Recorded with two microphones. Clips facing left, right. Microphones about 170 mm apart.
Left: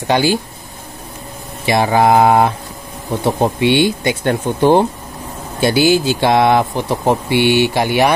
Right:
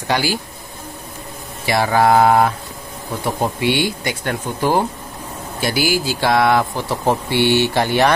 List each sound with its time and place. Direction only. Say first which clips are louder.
0.1 s speech: left 5 dB; 25° left (ahead or behind)
1.7 s speech: left 2 dB; 20° left (ahead or behind)